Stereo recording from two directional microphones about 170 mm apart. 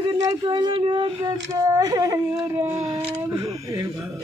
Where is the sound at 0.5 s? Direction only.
25° right (ahead or behind).